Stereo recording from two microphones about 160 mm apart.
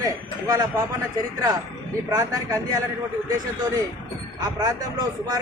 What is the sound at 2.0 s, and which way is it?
A man's voice, 20° right (ahead or behind).